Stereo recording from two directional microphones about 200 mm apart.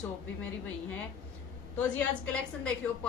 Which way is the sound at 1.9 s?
5° left (ahead or behind).